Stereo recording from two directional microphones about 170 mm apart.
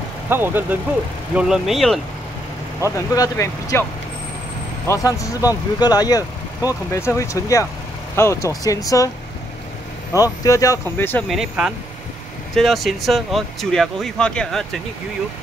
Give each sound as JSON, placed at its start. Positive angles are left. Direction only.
{"t": 0.3, "sound": "speech", "side_deg": -10}
{"t": 3.0, "sound": "speech", "side_deg": 20}
{"t": 4.8, "sound": "speech", "side_deg": 20}
{"t": 10.1, "sound": "speech", "side_deg": 20}
{"t": 11.2, "sound": "speech", "side_deg": -5}